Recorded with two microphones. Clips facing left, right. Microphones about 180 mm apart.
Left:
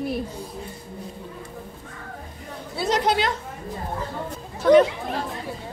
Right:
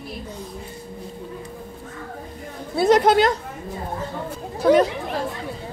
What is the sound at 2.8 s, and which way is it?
Speech, 55° right (ahead or behind).